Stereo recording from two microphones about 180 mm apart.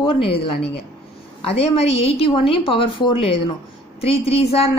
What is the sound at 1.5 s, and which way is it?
A woman's voice, 35° left (ahead or behind).